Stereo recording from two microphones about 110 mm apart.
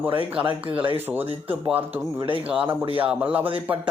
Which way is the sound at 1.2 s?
55° right (ahead or behind).